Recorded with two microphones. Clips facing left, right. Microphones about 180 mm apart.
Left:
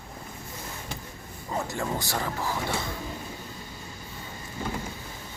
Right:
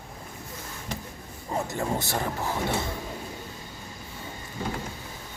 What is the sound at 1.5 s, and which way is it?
Speech, 20° right (ahead or behind).